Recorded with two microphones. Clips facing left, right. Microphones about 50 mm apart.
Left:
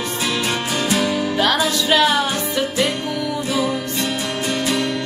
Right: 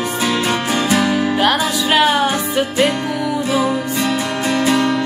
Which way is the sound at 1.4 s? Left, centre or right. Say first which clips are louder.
Right 2 dB; centre.